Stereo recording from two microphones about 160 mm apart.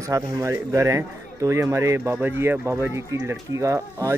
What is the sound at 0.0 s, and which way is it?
Speech, 20° right (ahead or behind).